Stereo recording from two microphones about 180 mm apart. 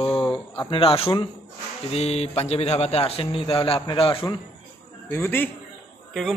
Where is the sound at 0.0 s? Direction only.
30° left (ahead or behind).